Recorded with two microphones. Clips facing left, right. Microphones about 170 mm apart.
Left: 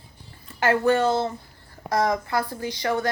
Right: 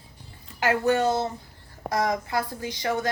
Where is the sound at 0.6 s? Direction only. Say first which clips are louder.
Left 2 dB; 15° right (ahead or behind).